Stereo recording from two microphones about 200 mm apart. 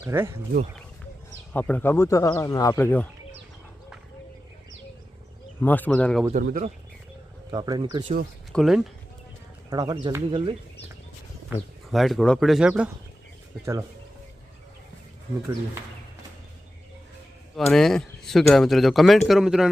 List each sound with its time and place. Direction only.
0.0 s speech: 10° right (ahead or behind)
1.5 s speech: 5° left (ahead or behind)
5.5 s speech: 10° left (ahead or behind)
6.3 s speech: 45° right (ahead or behind)
7.5 s speech: 20° right (ahead or behind)
8.5 s speech: centre (ahead or behind)
9.6 s speech: 20° right (ahead or behind)
11.4 s speech: centre (ahead or behind)
17.7 s speech: centre (ahead or behind)